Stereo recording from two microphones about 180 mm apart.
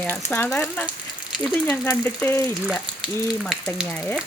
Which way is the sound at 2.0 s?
10° left (ahead or behind).